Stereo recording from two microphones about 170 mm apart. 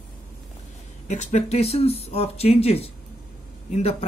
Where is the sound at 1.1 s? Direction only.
45° left (ahead or behind).